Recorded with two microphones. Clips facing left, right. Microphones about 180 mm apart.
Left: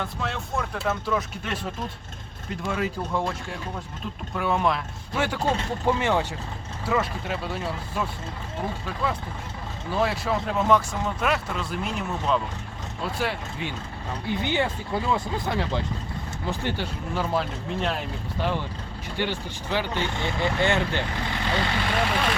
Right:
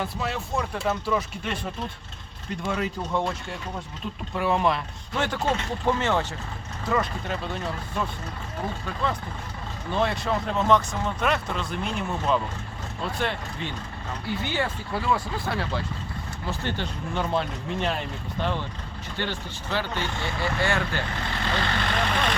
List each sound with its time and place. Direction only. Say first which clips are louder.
0.0 s speech: right 1 dB; 5° right (ahead or behind)